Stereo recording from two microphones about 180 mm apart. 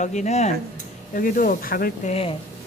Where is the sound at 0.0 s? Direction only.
40° left (ahead or behind).